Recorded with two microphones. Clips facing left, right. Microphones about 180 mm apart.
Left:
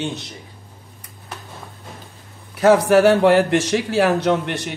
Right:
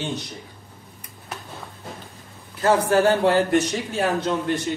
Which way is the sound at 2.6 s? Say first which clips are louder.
Left 5 dB; 80° left.